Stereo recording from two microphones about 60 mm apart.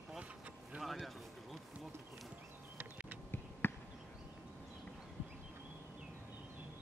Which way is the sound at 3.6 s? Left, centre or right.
Left.